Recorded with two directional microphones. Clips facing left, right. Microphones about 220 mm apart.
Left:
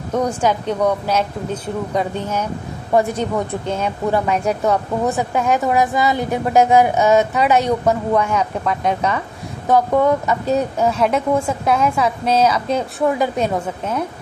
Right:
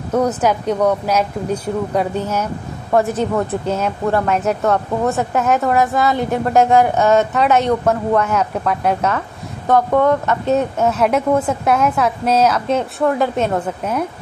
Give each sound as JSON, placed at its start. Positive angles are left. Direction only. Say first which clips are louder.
{"t": 0.1, "sound": "speech", "louder": "right 2 dB", "side_deg": -5}